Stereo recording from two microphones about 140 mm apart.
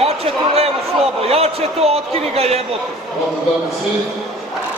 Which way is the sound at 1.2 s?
45° right (ahead or behind).